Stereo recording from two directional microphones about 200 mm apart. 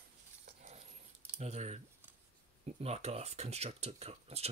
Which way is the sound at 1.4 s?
35° right (ahead or behind).